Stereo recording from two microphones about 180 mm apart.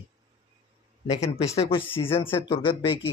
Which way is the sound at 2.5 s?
30° left (ahead or behind).